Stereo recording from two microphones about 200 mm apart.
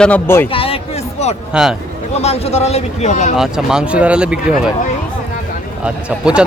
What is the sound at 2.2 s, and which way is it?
Speech, 30° left (ahead or behind).